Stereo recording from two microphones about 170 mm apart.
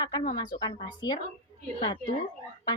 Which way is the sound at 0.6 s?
25° left (ahead or behind).